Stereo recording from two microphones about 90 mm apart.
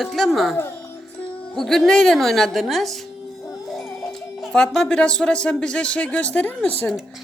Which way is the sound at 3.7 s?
Centre (ahead or behind).